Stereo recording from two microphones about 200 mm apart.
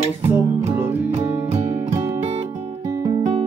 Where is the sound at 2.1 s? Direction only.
35° right (ahead or behind).